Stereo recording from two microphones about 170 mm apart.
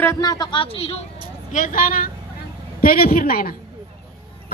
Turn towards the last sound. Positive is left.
turn(degrees=60)  # may be behind; listen again after turning